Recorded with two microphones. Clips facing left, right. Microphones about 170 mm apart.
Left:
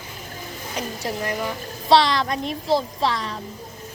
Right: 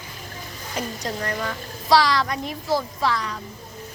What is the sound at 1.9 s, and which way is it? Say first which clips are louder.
A woman's voice: left 1 dB; 25° left (ahead or behind).